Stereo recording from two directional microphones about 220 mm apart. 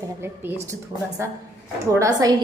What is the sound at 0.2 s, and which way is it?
Speech, 10° right (ahead or behind).